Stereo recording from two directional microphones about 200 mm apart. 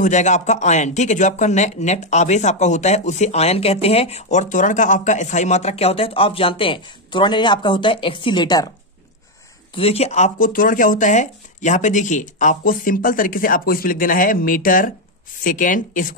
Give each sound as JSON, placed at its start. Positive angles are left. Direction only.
{"t": 0.0, "sound": "speech", "side_deg": 35}
{"t": 9.8, "sound": "speech", "side_deg": 30}